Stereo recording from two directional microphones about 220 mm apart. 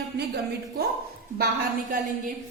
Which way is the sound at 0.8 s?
45° right (ahead or behind).